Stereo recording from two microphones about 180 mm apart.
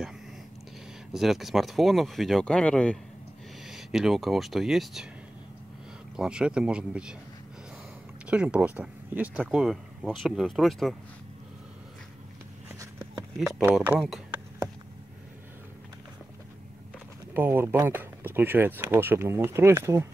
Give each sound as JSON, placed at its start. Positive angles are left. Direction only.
{"t": 1.1, "sound": "speech", "side_deg": 0}
{"t": 6.1, "sound": "speech", "side_deg": -5}
{"t": 8.3, "sound": "speech", "side_deg": -5}
{"t": 12.7, "sound": "a sound", "side_deg": -20}
{"t": 13.7, "sound": "speech", "side_deg": -5}
{"t": 17.3, "sound": "speech", "side_deg": -10}